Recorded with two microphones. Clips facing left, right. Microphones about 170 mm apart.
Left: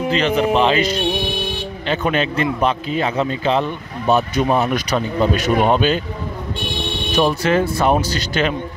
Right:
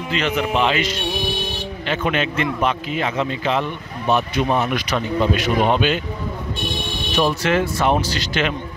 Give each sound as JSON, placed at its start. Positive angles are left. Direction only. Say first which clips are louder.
{"t": 0.1, "sound": "speech", "louder": "left 3 dB", "side_deg": 35}
{"t": 7.4, "sound": "speech", "louder": "left 2 dB", "side_deg": 35}